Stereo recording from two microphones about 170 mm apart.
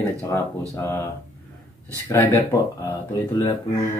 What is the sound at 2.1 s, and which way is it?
Speech, 15° left (ahead or behind).